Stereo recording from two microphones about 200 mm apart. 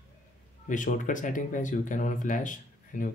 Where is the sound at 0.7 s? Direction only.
40° left (ahead or behind).